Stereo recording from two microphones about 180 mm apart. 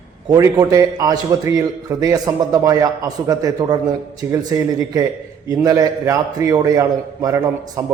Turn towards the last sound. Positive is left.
turn(degrees=-15)  # may be behind; listen again after turning